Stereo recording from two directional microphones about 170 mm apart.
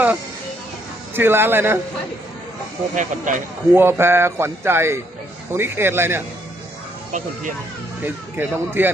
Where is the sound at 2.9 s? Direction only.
50° right (ahead or behind).